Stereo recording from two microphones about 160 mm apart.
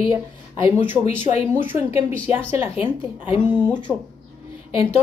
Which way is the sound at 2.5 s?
40° left (ahead or behind).